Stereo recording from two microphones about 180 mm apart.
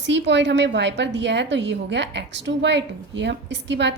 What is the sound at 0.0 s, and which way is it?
A woman's voice, 80° right.